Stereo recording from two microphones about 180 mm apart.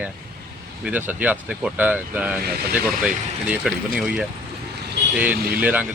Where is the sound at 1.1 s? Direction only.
10° right (ahead or behind).